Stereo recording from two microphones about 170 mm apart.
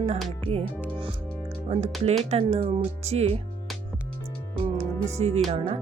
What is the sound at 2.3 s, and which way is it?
Speech, 40° right (ahead or behind).